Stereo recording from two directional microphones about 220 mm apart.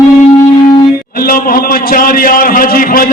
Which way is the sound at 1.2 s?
40° left (ahead or behind).